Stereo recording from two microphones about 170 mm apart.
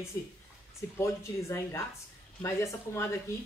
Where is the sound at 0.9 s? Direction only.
20° left (ahead or behind).